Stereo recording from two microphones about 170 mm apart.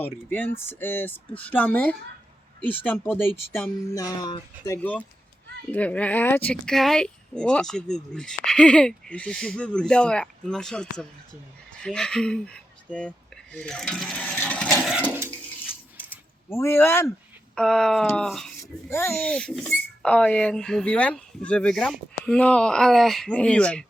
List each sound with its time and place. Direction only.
0.0 s speech: 10° left (ahead or behind)
4.6 s speech: 15° left (ahead or behind)
15.1 s a sound: 10° right (ahead or behind)
16.5 s speech: 15° left (ahead or behind)
17.5 s speech: 5° left (ahead or behind)
18.6 s speech: 15° left (ahead or behind)
19.1 s speech: 5° left (ahead or behind)